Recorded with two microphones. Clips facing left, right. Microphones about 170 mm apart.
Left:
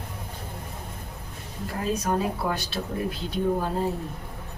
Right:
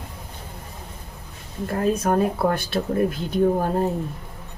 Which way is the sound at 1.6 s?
55° right (ahead or behind).